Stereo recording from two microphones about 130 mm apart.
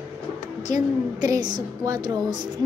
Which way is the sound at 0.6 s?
30° right (ahead or behind).